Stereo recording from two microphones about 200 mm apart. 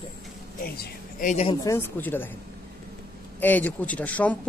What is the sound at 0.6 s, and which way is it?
Speech, 45° left (ahead or behind).